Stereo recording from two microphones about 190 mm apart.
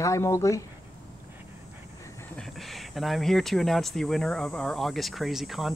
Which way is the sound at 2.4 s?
Centre (ahead or behind).